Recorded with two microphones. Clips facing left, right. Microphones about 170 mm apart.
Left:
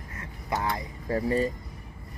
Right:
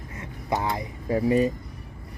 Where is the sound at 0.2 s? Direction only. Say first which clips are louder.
Right 3 dB; 15° right (ahead or behind).